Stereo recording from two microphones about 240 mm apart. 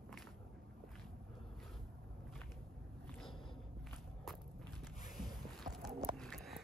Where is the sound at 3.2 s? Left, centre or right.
Centre.